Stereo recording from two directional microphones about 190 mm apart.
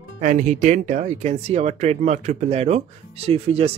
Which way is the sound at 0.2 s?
40° right (ahead or behind).